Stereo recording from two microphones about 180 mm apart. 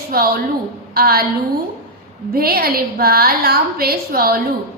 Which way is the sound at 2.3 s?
55° right (ahead or behind).